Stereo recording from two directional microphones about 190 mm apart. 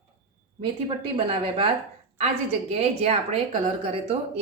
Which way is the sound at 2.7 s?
35° right (ahead or behind).